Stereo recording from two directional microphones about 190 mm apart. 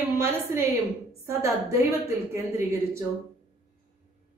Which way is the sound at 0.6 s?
15° right (ahead or behind).